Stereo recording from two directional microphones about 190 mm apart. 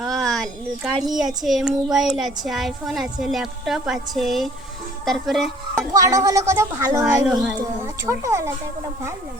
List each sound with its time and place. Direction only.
0.0 s a sound: centre (ahead or behind)
1.5 s speech: centre (ahead or behind)
5.7 s speech: 15° right (ahead or behind)
7.0 s speech: 5° right (ahead or behind)